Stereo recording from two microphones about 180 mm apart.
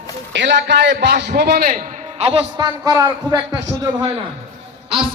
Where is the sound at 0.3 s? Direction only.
75° right (ahead or behind); by 2.2 s 45° right (ahead or behind).